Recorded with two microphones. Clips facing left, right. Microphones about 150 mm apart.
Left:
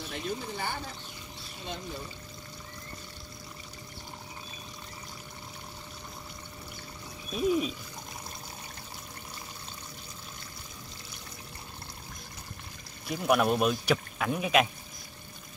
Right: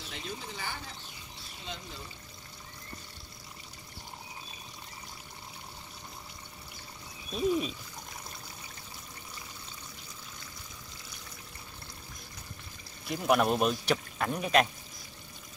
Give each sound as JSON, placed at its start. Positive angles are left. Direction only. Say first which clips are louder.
{"t": 0.1, "sound": "speech", "louder": "left 6 dB", "side_deg": 55}
{"t": 7.3, "sound": "speech", "louder": "left 2 dB", "side_deg": 5}
{"t": 13.1, "sound": "speech", "louder": "left 1 dB", "side_deg": 0}